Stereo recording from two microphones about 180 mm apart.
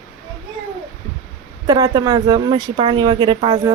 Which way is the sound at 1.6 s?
20° right (ahead or behind).